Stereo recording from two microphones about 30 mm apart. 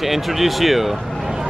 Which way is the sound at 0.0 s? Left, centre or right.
Centre.